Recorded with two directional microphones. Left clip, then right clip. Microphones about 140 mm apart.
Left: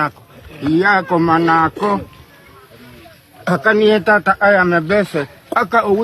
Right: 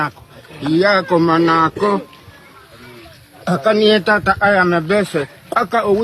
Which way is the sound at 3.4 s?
25° left (ahead or behind).